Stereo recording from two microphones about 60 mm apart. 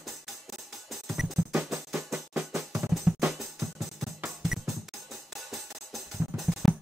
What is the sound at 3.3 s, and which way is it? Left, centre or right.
Music, centre.